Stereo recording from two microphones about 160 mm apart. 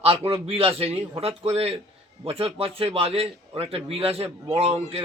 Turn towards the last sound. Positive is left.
turn(degrees=-40)  # may be behind; listen again after turning